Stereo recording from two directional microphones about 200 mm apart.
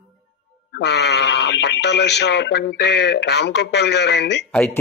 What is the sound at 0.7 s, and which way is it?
Speech, 55° left (ahead or behind).